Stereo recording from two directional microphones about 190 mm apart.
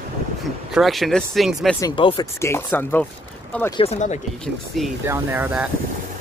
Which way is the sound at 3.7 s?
35° left (ahead or behind).